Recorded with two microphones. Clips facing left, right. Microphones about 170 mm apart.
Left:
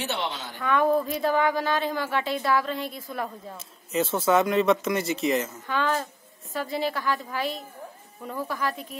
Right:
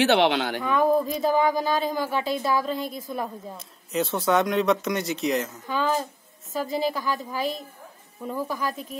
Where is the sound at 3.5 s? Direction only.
Centre (ahead or behind).